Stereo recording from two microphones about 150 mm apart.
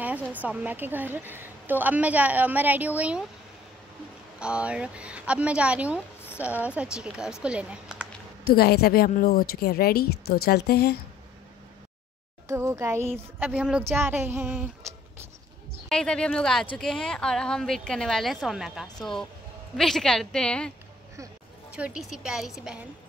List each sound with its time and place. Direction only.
0.0 s a woman's voice: 10° right (ahead or behind)
4.4 s a woman's voice: 5° right (ahead or behind)
8.5 s a woman's voice: 90° left
12.4 s a woman's voice: 20° right (ahead or behind)
15.9 s speech: 5° left (ahead or behind)
21.7 s speech: 5° right (ahead or behind)